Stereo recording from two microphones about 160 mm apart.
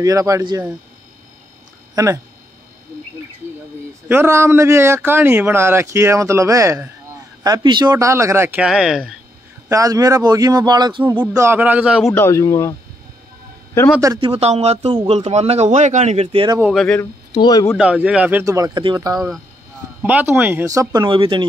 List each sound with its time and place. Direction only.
0.0 s a man's voice: 20° right (ahead or behind)
2.0 s a man's voice: 20° right (ahead or behind)
4.1 s a man's voice: 15° right (ahead or behind)
8.5 s speech: 5° right (ahead or behind)
9.7 s a man's voice: 20° right (ahead or behind)
12.1 s speech: 15° left (ahead or behind)
14.2 s speech: 40° right (ahead or behind)
14.9 s a man's voice: 30° right (ahead or behind)
15.1 s speech: 40° right (ahead or behind)
16.6 s speech: 5° left (ahead or behind)
17.3 s speech: 25° left (ahead or behind)
17.7 s a man's voice: 10° right (ahead or behind); by 19.1 s 25° right (ahead or behind)
20.0 s a man's voice: 10° right (ahead or behind); by 21.5 s 30° right (ahead or behind)